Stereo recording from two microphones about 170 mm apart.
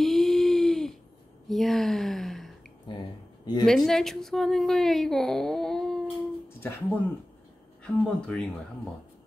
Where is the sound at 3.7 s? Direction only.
Centre (ahead or behind).